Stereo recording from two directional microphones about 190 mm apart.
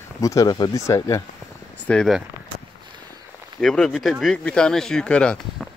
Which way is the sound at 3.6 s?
5° left (ahead or behind).